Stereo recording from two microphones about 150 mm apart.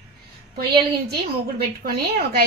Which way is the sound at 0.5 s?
90° right.